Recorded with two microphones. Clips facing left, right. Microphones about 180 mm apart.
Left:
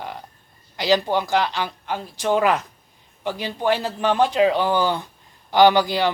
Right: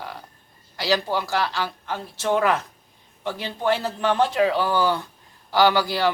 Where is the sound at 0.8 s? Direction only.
20° left (ahead or behind).